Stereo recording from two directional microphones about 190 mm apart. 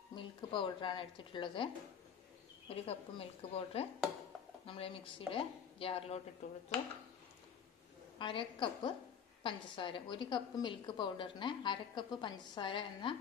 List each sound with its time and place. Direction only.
0.1 s a woman's voice: 25° left (ahead or behind)
2.7 s a woman's voice: 30° left (ahead or behind)
8.2 s a woman's voice: 25° left (ahead or behind)